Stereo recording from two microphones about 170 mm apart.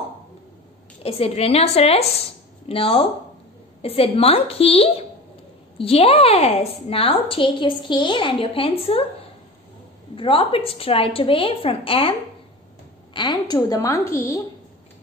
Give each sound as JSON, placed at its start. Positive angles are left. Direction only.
{"t": 1.0, "sound": "a woman's voice", "side_deg": 35}
{"t": 10.1, "sound": "a woman's voice", "side_deg": 30}